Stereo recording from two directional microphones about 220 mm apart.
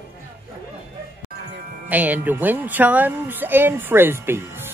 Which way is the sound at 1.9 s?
5° right (ahead or behind).